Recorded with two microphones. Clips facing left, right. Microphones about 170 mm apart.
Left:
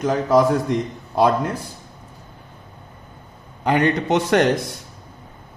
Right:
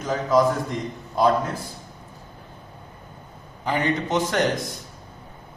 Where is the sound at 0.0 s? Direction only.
80° left.